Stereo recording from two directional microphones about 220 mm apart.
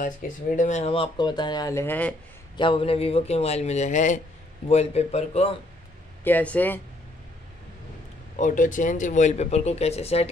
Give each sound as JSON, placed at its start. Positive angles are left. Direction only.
{"t": 0.2, "sound": "a man's voice", "side_deg": 40}
{"t": 2.5, "sound": "a man's voice", "side_deg": 20}
{"t": 6.2, "sound": "speech", "side_deg": 5}
{"t": 8.4, "sound": "speech", "side_deg": 35}